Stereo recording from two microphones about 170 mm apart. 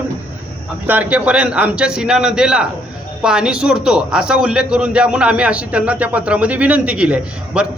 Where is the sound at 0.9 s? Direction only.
10° right (ahead or behind).